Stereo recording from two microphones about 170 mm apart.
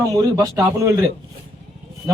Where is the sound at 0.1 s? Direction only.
20° right (ahead or behind).